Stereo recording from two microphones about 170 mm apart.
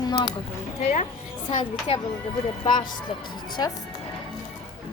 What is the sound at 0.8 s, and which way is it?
Speech, 40° left (ahead or behind).